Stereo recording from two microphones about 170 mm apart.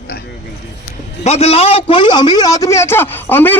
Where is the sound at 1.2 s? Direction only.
40° left (ahead or behind).